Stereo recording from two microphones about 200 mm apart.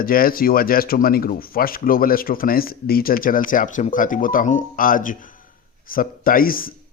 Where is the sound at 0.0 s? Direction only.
45° left (ahead or behind).